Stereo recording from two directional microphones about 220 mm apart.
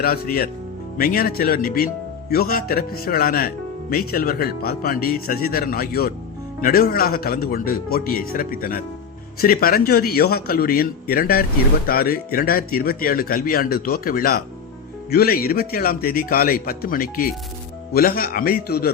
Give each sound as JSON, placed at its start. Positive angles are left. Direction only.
{"t": 0.0, "sound": "speech", "side_deg": 45}